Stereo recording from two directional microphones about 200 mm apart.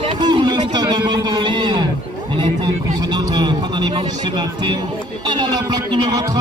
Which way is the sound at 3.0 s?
20° right (ahead or behind).